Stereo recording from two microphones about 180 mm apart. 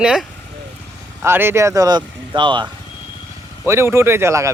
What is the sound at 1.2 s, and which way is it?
Speech, 10° right (ahead or behind).